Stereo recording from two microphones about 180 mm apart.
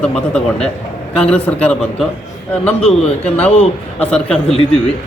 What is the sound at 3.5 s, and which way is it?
A man's voice, 35° left (ahead or behind).